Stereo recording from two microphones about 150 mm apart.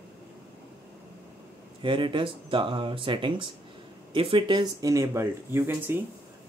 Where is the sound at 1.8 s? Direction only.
35° right (ahead or behind).